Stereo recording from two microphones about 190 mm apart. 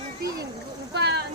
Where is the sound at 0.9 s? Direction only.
60° right (ahead or behind).